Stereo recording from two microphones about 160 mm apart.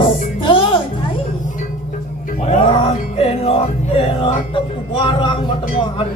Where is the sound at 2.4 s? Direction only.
40° left (ahead or behind).